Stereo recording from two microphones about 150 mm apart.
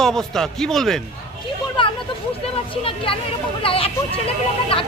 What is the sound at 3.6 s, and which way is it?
Speech, 40° left (ahead or behind).